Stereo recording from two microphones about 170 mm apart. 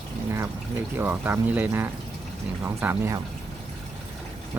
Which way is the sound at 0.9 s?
10° right (ahead or behind).